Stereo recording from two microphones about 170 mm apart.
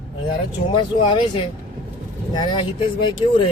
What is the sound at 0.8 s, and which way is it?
Speech, 30° left (ahead or behind).